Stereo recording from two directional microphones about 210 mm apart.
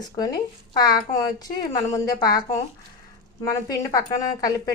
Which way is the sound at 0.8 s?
20° left (ahead or behind).